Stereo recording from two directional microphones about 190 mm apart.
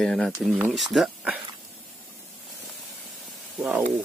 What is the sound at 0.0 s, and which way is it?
Speech, centre (ahead or behind).